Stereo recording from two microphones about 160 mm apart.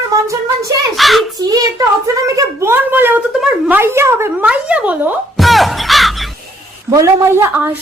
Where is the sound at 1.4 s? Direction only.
25° right (ahead or behind); by 6.2 s centre (ahead or behind).